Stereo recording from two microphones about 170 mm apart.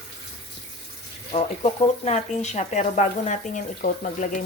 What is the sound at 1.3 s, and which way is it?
Speech, 35° left (ahead or behind).